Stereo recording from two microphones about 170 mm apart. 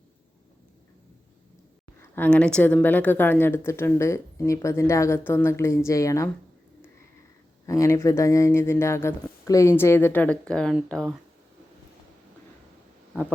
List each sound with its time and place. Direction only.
2.0 s speech: 10° left (ahead or behind)
7.7 s speech: 15° left (ahead or behind)